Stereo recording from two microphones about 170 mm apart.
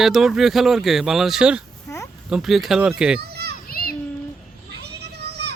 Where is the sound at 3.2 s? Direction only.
70° right (ahead or behind).